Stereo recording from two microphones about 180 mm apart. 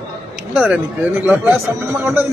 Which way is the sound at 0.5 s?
10° right (ahead or behind).